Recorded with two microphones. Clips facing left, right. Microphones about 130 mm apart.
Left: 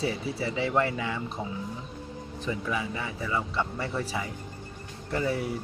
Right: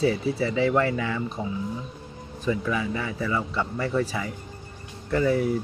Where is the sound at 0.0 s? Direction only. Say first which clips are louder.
Right 6 dB; 25° left (ahead or behind).